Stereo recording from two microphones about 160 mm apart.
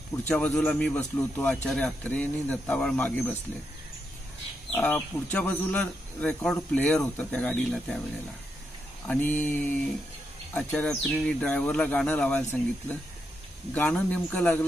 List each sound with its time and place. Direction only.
0.2 s speech: 10° left (ahead or behind)
4.7 s speech: 10° left (ahead or behind)
9.0 s speech: 10° left (ahead or behind)